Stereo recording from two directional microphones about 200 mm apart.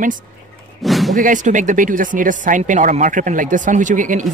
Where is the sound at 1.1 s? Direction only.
40° right (ahead or behind).